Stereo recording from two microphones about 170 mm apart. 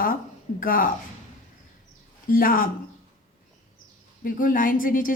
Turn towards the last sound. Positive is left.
turn(degrees=55)  # may be behind; listen again after turning